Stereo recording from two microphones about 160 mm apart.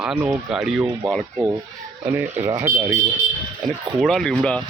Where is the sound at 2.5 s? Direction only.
25° right (ahead or behind).